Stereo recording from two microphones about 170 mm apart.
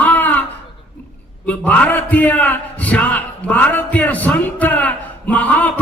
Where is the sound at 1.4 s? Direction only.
10° left (ahead or behind).